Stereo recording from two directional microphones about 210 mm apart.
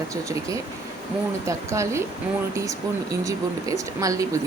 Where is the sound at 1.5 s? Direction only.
15° right (ahead or behind).